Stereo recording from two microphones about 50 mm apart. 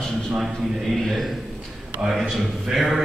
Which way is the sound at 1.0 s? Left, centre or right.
Centre.